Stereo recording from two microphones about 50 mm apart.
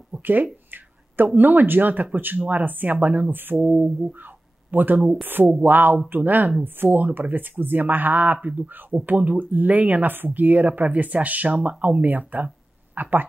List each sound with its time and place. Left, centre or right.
0.2 s speech: right
3.5 s mantra: right
4.6 s speech: right